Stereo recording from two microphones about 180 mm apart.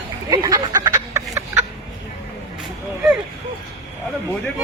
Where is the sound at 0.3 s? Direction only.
20° right (ahead or behind).